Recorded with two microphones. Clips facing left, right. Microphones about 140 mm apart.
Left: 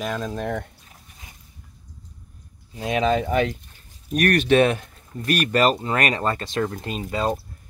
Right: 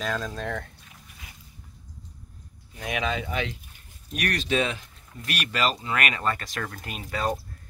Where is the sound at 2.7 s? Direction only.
30° left (ahead or behind).